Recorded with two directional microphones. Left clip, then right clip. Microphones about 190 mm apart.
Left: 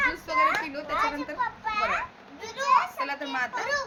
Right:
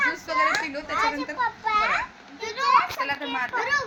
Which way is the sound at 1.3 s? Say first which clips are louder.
Right 6 dB; 25° right (ahead or behind).